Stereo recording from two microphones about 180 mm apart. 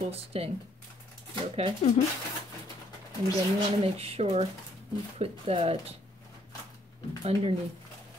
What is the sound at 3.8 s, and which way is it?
Speech, 35° right (ahead or behind).